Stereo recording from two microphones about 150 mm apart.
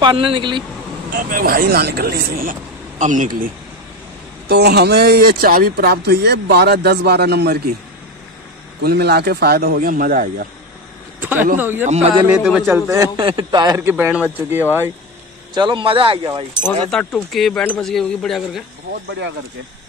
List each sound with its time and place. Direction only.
0.0 s a man's voice: 35° right (ahead or behind)
1.1 s speech: 80° right
3.0 s speech: 60° right (ahead or behind)
4.5 s speech: 90° right
8.8 s speech: 90° right; by 10.4 s 70° right (ahead or behind)
11.1 s a sound: 10° right (ahead or behind)
11.5 s speech: 15° right (ahead or behind)
11.8 s a man's voice: 50° right (ahead or behind)
12.4 s speech: centre (ahead or behind)
12.7 s a man's voice: 20° right (ahead or behind)
15.5 s a man's voice: 30° right (ahead or behind)
17.1 s speech: centre (ahead or behind)